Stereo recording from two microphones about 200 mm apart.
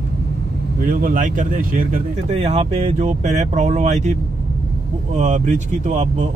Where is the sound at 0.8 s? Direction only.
40° right (ahead or behind).